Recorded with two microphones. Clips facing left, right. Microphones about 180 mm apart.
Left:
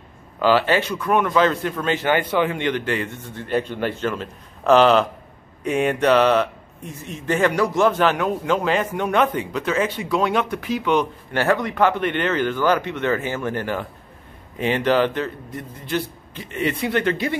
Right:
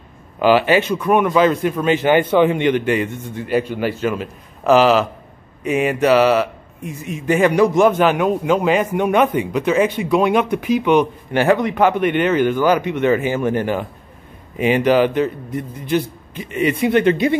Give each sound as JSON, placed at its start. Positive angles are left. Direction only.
{"t": 0.4, "sound": "speech", "side_deg": -15}